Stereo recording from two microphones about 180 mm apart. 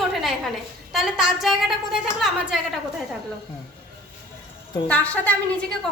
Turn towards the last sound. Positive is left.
turn(degrees=5)  # may be behind; listen again after turning